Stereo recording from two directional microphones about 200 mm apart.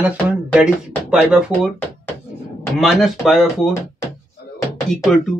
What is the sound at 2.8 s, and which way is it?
Speech, centre (ahead or behind).